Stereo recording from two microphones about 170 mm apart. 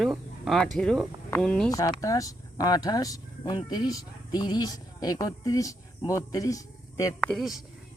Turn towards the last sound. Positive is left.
turn(degrees=0)  # may be behind; listen again after turning